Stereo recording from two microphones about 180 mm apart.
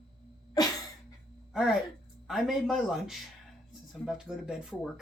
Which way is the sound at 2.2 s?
Centre (ahead or behind).